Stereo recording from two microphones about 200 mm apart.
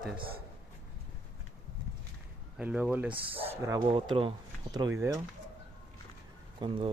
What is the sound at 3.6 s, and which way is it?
Speech, 20° right (ahead or behind).